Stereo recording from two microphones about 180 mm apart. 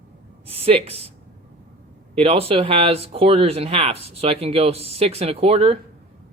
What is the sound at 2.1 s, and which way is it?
Speech, 35° right (ahead or behind).